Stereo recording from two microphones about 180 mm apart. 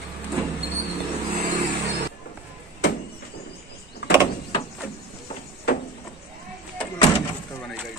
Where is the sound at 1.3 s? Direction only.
25° right (ahead or behind).